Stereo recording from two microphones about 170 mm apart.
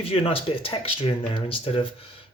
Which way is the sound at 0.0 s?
35° left (ahead or behind).